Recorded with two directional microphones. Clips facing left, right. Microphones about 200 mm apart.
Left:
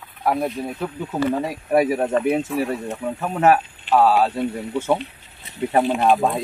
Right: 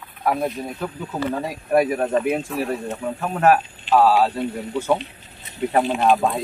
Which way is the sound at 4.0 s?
Centre (ahead or behind).